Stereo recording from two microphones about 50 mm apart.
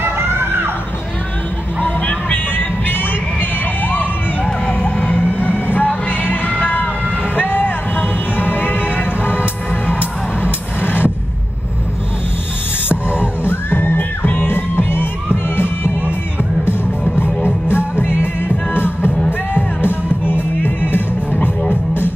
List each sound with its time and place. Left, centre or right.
0.0 s music: right
1.8 s music: left
4.6 s vehicle: left
5.9 s music: left
13.5 s music: left
18.0 s music: left